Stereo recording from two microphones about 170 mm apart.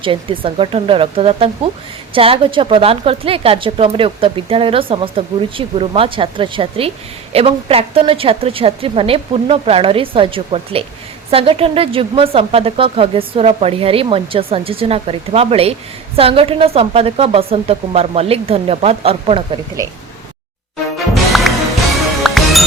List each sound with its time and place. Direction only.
0.0 s a woman's voice: 30° right (ahead or behind)
22.2 s music: centre (ahead or behind)